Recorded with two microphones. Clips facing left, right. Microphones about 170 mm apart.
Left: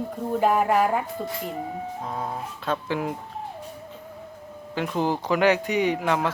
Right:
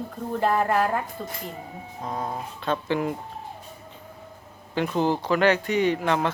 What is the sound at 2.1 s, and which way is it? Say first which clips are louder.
Speech: even; centre (ahead or behind).